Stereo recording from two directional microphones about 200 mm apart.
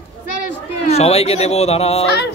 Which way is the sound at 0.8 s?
35° left (ahead or behind).